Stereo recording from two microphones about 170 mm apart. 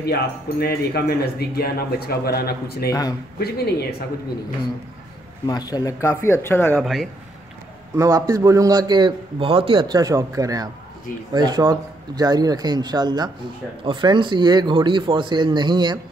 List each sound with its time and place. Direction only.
0.0 s speech: 70° left (ahead or behind)
2.9 s speech: 20° left (ahead or behind)
3.3 s speech: 70° left (ahead or behind)
5.5 s speech: 25° left (ahead or behind)
6.8 s speech: centre (ahead or behind)
7.9 s a man's voice: 20° right (ahead or behind)